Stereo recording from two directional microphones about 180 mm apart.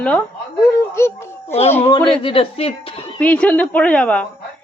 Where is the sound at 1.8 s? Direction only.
30° left (ahead or behind).